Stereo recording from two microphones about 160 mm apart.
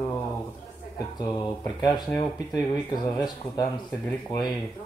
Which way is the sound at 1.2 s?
25° left (ahead or behind).